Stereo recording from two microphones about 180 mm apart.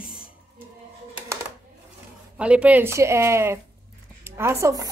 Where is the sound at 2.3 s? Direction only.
5° right (ahead or behind).